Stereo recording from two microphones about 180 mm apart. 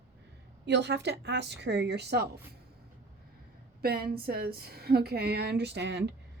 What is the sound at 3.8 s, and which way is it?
A woman's voice, 55° right (ahead or behind).